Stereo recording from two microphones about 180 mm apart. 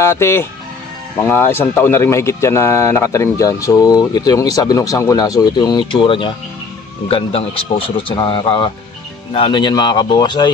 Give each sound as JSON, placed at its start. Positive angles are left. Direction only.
{"t": 0.0, "sound": "speech", "side_deg": 15}